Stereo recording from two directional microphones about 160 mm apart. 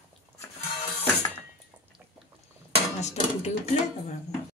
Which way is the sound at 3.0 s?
45° left (ahead or behind).